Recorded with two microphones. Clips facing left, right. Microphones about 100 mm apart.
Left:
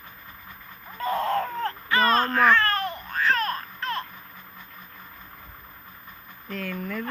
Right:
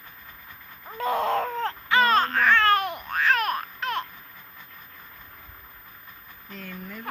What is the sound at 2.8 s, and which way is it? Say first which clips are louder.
Babbling: even; 15° right (ahead or behind).